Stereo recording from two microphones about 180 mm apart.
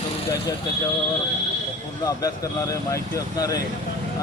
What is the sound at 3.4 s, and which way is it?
Speech, 20° left (ahead or behind).